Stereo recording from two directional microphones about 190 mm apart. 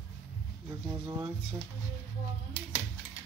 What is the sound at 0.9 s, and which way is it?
Speech, 15° right (ahead or behind).